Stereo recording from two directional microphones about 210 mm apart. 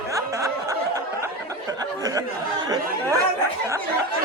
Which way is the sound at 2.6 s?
15° right (ahead or behind).